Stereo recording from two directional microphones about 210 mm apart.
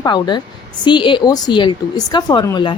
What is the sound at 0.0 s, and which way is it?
Speech, 20° left (ahead or behind).